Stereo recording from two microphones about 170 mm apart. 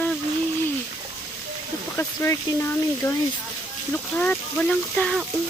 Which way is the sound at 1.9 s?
15° left (ahead or behind).